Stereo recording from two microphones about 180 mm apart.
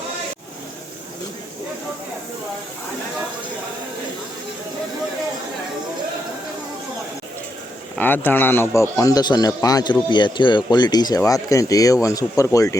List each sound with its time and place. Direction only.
7.9 s a man's voice: 10° left (ahead or behind)